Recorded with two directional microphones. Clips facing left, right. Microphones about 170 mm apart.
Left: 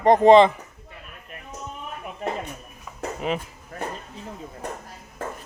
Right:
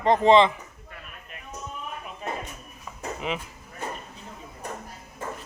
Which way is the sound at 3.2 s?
40° left (ahead or behind).